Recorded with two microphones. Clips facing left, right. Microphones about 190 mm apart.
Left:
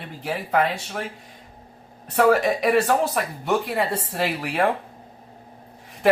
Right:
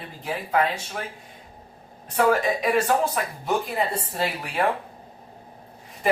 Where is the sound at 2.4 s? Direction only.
65° left (ahead or behind).